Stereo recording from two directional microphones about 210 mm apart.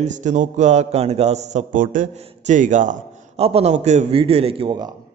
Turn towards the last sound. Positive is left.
turn(degrees=-20)  # may be behind; listen again after turning